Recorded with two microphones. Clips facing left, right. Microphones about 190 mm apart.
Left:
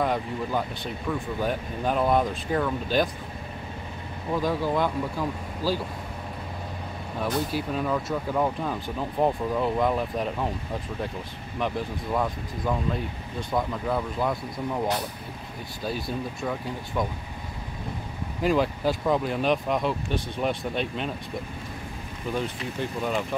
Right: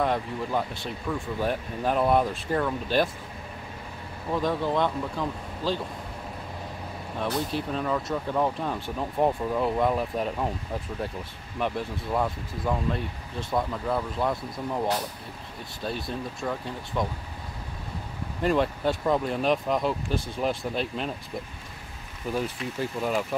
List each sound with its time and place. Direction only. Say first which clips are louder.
0.0 s speech: even; centre (ahead or behind)
4.3 s speech: left 1 dB; centre (ahead or behind)
7.2 s speech: left 1 dB; 5° left (ahead or behind)
11.6 s speech: even; centre (ahead or behind)
15.8 s speech: left 1 dB; centre (ahead or behind)
18.4 s speech: left 1 dB; centre (ahead or behind)
22.3 s speech: even; 5° right (ahead or behind)